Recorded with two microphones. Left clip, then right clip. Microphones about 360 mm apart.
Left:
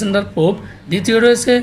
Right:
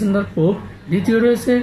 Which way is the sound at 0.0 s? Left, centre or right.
Left.